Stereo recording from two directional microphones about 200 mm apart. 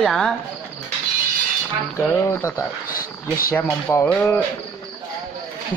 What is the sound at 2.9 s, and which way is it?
Speech, 45° left (ahead or behind).